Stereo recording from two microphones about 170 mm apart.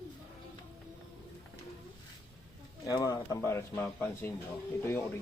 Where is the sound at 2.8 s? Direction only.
20° left (ahead or behind).